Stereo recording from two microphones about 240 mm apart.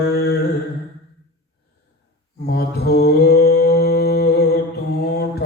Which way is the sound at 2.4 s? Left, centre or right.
Left.